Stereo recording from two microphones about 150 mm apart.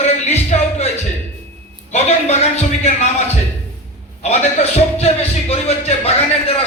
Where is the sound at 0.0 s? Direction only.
45° left (ahead or behind).